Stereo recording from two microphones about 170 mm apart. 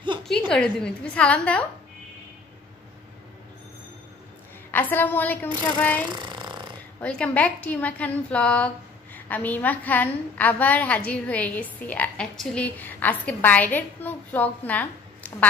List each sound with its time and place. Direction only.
0.5 s a woman's voice: 5° left (ahead or behind)
4.6 s a woman's voice: 10° left (ahead or behind)
6.1 s a sound: 25° right (ahead or behind)
7.0 s a woman's voice: 10° left (ahead or behind)